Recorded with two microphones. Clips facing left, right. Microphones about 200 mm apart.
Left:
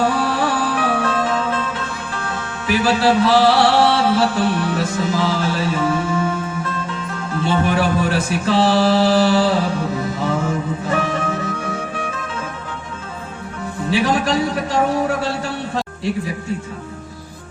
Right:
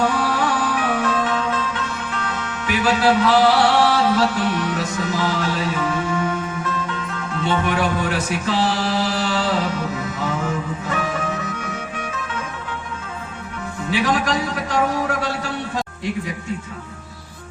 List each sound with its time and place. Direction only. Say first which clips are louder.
0.1 s music: left 2 dB; 30° left (ahead or behind)
7.4 s a sound: left 3 dB; 30° left (ahead or behind)
11.3 s music: left 4 dB; 30° left (ahead or behind)
13.9 s a man's voice: left 3 dB; 30° left (ahead or behind)